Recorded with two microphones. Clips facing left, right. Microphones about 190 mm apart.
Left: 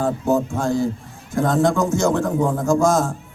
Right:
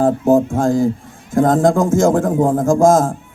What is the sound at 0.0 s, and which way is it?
Music, 50° right (ahead or behind).